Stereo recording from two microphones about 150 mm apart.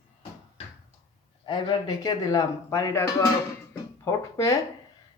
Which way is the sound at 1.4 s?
30° left (ahead or behind).